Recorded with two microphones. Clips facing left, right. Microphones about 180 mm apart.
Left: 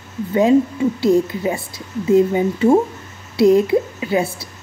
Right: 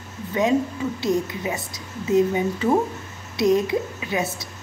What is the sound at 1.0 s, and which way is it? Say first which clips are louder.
A woman's voice: left 7 dB; 30° left (ahead or behind).